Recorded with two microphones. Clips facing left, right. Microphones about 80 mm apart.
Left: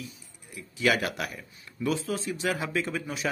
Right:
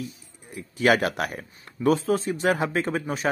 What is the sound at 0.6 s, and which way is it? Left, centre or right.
Speech, right.